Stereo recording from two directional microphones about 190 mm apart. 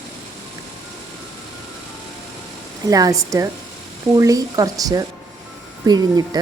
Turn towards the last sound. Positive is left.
turn(degrees=-20)  # may be behind; listen again after turning